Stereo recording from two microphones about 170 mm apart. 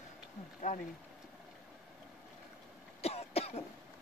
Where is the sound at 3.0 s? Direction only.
35° left (ahead or behind).